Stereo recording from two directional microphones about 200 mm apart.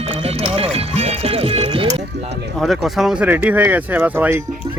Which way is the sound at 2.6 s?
Centre (ahead or behind).